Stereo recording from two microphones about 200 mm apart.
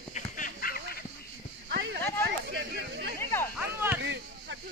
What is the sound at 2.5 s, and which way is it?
Chatter, 60° right (ahead or behind).